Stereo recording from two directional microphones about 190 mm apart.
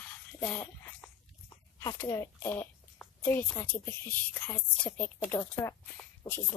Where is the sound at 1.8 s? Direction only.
15° left (ahead or behind).